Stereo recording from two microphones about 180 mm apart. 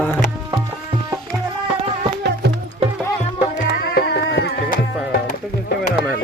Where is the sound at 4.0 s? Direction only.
65° left (ahead or behind).